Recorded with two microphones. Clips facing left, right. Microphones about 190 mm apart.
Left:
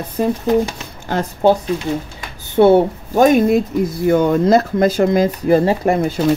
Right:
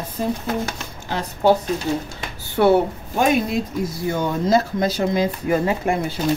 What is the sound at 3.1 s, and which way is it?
Speech, 45° left (ahead or behind).